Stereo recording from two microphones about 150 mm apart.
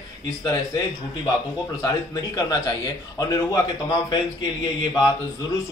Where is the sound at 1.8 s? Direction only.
25° left (ahead or behind).